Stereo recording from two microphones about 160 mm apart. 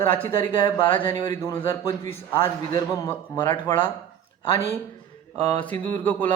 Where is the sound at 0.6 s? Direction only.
30° left (ahead or behind).